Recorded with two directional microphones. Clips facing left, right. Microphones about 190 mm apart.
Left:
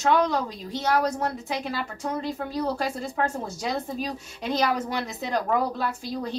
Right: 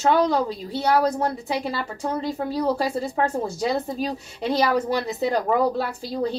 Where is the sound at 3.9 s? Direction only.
30° right (ahead or behind).